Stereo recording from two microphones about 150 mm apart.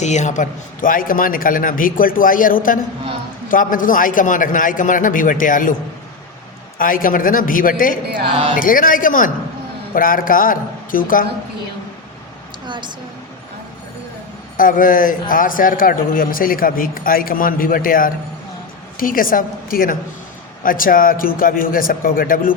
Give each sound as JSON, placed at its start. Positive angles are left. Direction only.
{"t": 0.0, "sound": "a man's voice", "side_deg": 50}
{"t": 6.7, "sound": "a man's voice", "side_deg": 65}
{"t": 12.6, "sound": "a woman's voice", "side_deg": -30}
{"t": 14.5, "sound": "a man's voice", "side_deg": 65}